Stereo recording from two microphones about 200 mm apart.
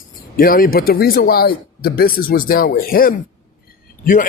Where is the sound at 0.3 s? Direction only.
45° left (ahead or behind).